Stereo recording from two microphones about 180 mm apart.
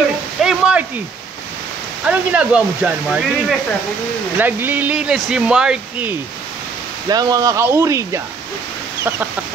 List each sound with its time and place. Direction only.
0.4 s a sound: 5° right (ahead or behind)
2.0 s speech: 5° right (ahead or behind)
7.1 s speech: 20° right (ahead or behind)